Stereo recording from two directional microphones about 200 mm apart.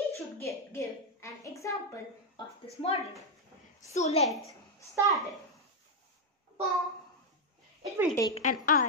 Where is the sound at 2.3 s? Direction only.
30° left (ahead or behind).